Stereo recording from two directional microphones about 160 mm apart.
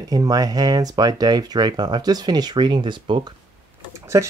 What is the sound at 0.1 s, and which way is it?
Speech, 25° right (ahead or behind).